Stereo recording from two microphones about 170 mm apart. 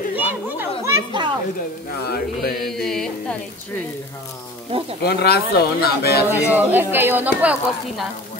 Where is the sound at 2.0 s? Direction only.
65° left (ahead or behind).